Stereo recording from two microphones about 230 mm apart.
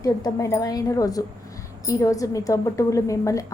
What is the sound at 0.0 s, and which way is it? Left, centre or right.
A woman's voice, centre.